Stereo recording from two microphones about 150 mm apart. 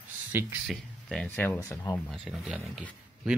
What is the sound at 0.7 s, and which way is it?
Speech, 5° left (ahead or behind).